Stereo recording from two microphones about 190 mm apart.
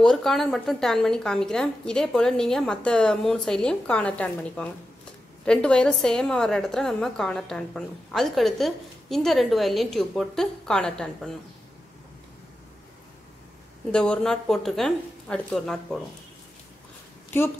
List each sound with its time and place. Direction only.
0.0 s a woman's voice: centre (ahead or behind)
13.9 s a woman's voice: 5° left (ahead or behind)